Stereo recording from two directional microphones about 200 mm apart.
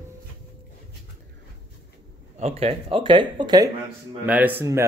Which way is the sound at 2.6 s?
30° right (ahead or behind).